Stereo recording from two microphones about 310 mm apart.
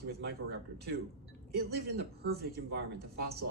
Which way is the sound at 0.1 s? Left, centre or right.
Right.